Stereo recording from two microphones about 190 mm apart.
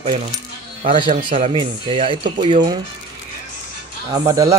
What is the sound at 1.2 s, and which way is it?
Speech, 25° right (ahead or behind).